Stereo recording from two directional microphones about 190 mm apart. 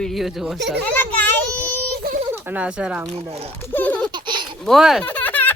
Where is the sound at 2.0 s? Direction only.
45° right (ahead or behind).